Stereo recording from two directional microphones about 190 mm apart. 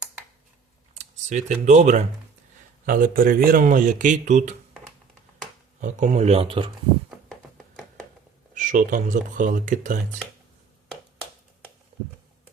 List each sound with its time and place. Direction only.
0.9 s speech: 40° right (ahead or behind)
5.8 s speech: 40° right (ahead or behind)
8.5 s speech: 45° right (ahead or behind)